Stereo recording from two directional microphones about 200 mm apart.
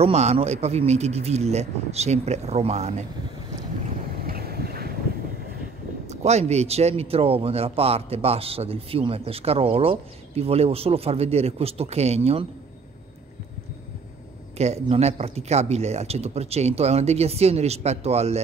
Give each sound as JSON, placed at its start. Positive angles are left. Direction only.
{"t": 0.0, "sound": "speech", "side_deg": -30}
{"t": 4.2, "sound": "boat", "side_deg": -50}
{"t": 6.0, "sound": "speech", "side_deg": -35}
{"t": 14.6, "sound": "speech", "side_deg": -30}